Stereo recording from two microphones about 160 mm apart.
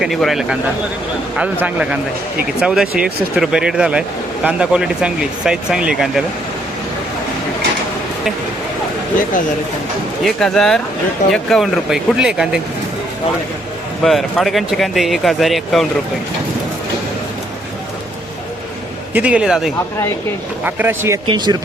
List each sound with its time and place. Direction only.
0.0 s a man's voice: centre (ahead or behind)
10.2 s speech: 5° left (ahead or behind)
14.0 s speech: centre (ahead or behind)
19.1 s a man's voice: 10° right (ahead or behind)
21.2 s speech: 30° right (ahead or behind)